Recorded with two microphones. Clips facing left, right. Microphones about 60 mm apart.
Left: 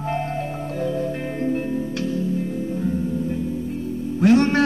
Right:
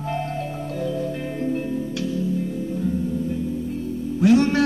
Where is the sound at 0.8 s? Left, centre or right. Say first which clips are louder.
Left 2 dB; left.